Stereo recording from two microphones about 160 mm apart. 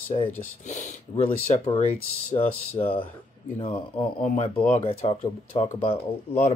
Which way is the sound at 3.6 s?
35° left (ahead or behind).